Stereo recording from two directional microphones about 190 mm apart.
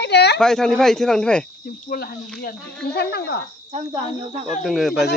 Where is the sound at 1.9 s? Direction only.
55° left (ahead or behind).